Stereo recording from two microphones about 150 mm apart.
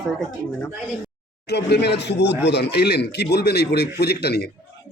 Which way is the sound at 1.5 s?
90° left.